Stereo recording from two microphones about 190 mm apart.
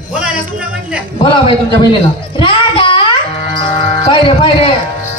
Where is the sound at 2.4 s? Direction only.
25° left (ahead or behind).